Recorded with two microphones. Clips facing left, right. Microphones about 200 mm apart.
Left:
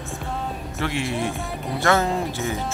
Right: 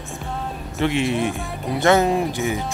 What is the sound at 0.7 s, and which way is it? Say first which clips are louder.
Speech: right 6 dB; 20° right (ahead or behind).